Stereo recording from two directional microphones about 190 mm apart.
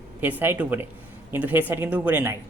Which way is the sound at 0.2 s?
10° right (ahead or behind).